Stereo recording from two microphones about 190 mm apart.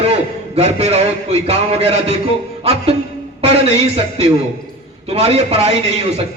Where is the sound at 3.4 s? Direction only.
35° right (ahead or behind).